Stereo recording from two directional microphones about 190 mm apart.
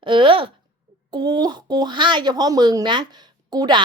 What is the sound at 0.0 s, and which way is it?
Speech, 25° right (ahead or behind).